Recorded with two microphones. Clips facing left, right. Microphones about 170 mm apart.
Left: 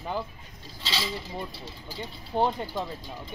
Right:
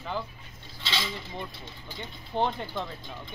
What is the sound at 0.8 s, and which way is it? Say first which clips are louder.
Speech: left 1 dB; 35° left (ahead or behind).